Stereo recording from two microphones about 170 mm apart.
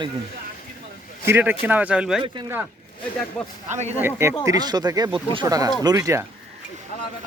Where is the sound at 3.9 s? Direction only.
15° right (ahead or behind).